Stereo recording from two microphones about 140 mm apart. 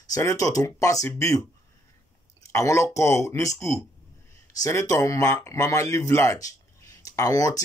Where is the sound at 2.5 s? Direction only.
20° left (ahead or behind).